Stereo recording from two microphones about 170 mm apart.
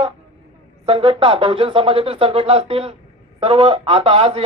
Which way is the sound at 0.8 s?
30° right (ahead or behind).